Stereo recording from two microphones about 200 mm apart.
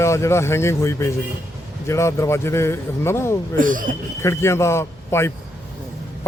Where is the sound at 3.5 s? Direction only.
40° right (ahead or behind).